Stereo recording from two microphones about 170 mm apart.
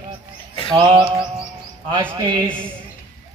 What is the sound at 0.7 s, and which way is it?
Music, 35° right (ahead or behind).